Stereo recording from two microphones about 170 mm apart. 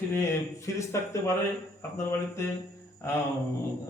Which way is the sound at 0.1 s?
15° left (ahead or behind).